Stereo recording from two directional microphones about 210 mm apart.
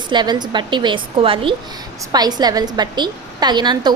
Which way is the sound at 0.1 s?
20° right (ahead or behind).